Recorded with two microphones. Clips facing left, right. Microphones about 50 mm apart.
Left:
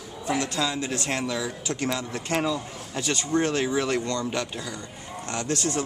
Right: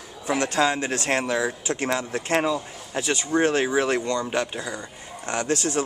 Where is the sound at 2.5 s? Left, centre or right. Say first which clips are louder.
Right 3 dB; centre.